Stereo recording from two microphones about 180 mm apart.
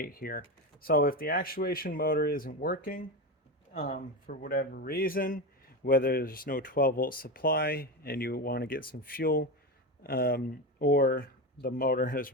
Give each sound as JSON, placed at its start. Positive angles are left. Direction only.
{"t": 0.0, "sound": "speech", "side_deg": 55}
{"t": 3.8, "sound": "speech", "side_deg": 40}